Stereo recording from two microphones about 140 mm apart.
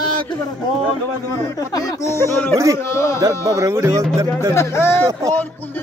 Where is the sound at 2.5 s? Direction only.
20° right (ahead or behind).